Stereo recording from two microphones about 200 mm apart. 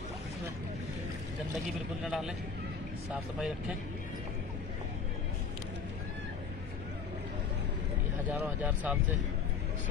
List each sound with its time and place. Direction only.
2.0 s a man's voice: 5° right (ahead or behind)
8.3 s speech: 10° right (ahead or behind)